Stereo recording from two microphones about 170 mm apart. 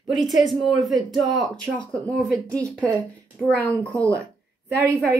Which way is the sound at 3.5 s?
10° left (ahead or behind).